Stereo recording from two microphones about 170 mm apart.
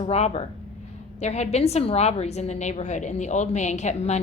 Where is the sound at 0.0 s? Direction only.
40° left (ahead or behind).